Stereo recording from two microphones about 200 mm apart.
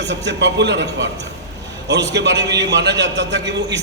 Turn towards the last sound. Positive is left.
turn(degrees=-60)  # may be behind; listen again after turning